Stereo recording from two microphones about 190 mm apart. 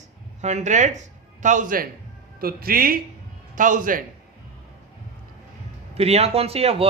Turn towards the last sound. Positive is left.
turn(degrees=-30)  # may be behind; listen again after turning